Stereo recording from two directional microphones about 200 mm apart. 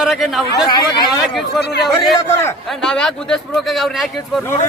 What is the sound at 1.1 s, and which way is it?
Speech, centre (ahead or behind).